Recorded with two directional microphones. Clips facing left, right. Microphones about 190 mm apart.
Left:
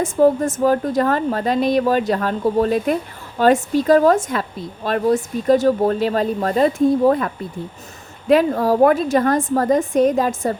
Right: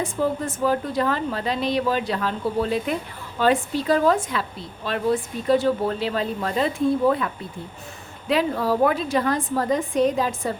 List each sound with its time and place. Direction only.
0.0 s speech: 45° left (ahead or behind)
8.3 s speech: 45° left (ahead or behind)